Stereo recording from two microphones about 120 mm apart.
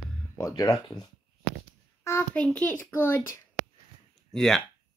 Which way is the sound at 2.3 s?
10° left (ahead or behind).